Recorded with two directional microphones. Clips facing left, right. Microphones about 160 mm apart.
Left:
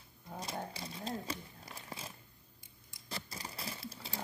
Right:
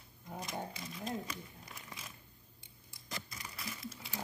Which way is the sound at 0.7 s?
30° left (ahead or behind).